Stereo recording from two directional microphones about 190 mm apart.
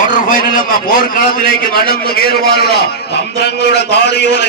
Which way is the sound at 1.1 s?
50° left (ahead or behind).